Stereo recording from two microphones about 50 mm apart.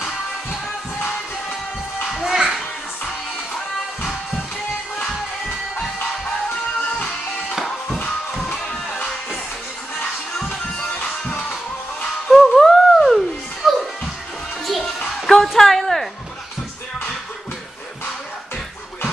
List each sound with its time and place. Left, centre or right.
2.0 s music: centre
2.3 s music: centre
4.0 s music: centre
7.4 s music: centre
10.8 s music: left
12.3 s music: centre
14.7 s music: centre